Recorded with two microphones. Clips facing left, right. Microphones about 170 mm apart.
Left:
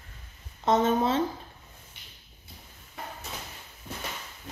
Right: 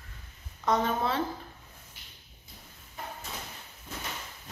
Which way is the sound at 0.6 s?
25° left (ahead or behind).